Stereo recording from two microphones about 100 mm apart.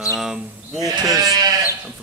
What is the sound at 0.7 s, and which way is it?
Speech, 35° right (ahead or behind).